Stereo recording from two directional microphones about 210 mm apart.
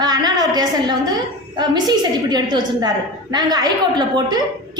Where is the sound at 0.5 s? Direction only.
20° right (ahead or behind).